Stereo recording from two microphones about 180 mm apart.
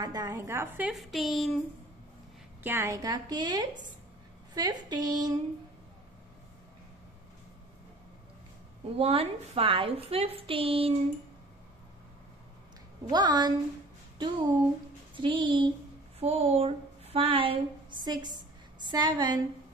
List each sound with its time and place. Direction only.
0.0 s a woman's voice: 20° right (ahead or behind); by 1.6 s centre (ahead or behind)
2.6 s a woman's voice: 15° right (ahead or behind)
8.9 s a woman's voice: 35° right (ahead or behind)
13.1 s a woman's voice: 25° right (ahead or behind)